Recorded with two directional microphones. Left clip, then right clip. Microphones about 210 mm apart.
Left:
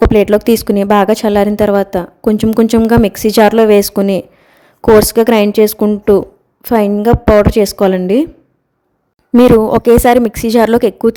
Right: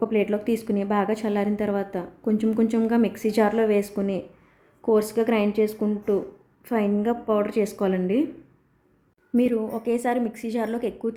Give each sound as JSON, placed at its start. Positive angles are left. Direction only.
{"t": 0.1, "sound": "a woman's voice", "side_deg": 40}
{"t": 9.3, "sound": "a woman's voice", "side_deg": 40}